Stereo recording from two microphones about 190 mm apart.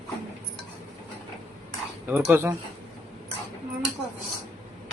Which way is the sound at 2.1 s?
10° right (ahead or behind).